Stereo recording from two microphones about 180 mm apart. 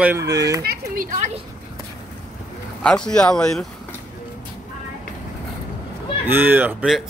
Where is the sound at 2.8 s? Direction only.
5° left (ahead or behind).